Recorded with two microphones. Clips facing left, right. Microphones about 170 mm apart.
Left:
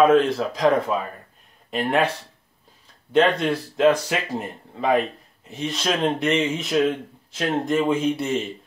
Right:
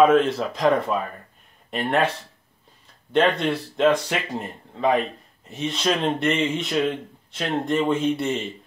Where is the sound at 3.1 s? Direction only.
Centre (ahead or behind).